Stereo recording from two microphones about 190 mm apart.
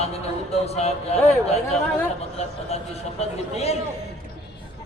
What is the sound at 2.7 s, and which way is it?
A man's voice, 35° left (ahead or behind).